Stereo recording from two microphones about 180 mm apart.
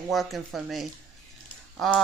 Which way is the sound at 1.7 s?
Centre (ahead or behind).